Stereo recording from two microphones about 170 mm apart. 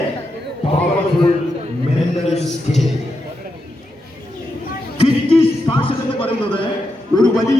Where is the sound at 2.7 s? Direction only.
40° left (ahead or behind).